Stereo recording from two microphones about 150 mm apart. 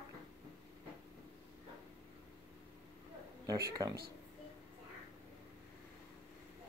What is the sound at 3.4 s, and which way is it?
Speech, 25° right (ahead or behind).